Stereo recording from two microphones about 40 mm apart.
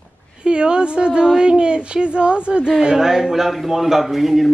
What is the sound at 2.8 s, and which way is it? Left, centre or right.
A woman's voice, centre.